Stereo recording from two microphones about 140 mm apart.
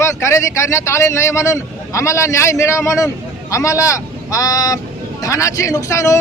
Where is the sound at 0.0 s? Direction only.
20° left (ahead or behind).